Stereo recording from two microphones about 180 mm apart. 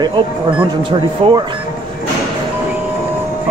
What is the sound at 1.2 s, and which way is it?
Speech, 30° right (ahead or behind).